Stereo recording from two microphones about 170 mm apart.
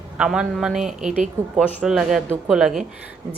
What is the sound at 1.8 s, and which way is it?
Speech, centre (ahead or behind).